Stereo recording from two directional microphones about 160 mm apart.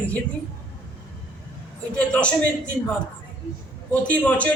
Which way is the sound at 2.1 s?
5° left (ahead or behind).